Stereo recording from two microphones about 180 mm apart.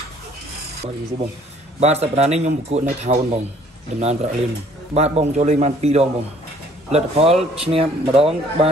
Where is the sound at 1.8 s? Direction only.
35° right (ahead or behind).